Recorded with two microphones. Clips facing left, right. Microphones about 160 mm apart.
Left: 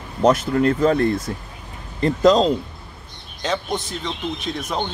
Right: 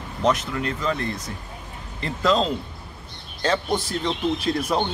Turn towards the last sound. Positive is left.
turn(degrees=-5)  # may be behind; listen again after turning